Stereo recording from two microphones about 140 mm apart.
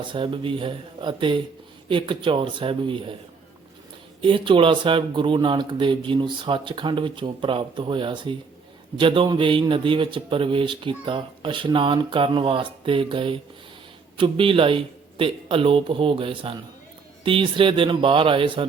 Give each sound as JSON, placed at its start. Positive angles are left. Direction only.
{"t": 0.0, "sound": "a man's voice", "side_deg": -35}
{"t": 4.2, "sound": "a man's voice", "side_deg": -35}